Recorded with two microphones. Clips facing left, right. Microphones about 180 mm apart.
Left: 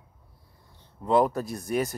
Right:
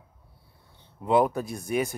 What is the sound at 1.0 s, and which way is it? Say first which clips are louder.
Speech: even; centre (ahead or behind).